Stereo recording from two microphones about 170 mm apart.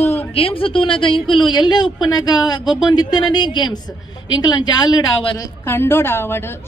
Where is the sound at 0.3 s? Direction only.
35° left (ahead or behind).